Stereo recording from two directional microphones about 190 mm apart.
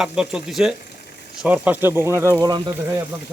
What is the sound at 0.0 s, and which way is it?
Stir, 5° right (ahead or behind).